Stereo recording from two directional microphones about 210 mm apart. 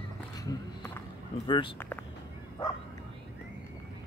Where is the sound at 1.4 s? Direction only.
25° left (ahead or behind).